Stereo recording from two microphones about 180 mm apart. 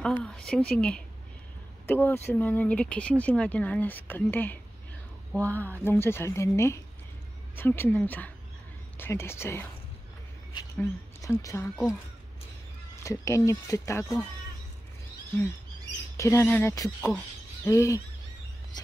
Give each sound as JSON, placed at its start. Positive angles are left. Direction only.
{"t": 0.0, "sound": "speech", "side_deg": 5}
{"t": 10.8, "sound": "speech", "side_deg": 15}
{"t": 13.0, "sound": "speech", "side_deg": 15}
{"t": 16.2, "sound": "speech", "side_deg": 15}